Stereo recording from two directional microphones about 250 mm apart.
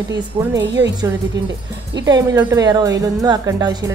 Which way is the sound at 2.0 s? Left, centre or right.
Centre.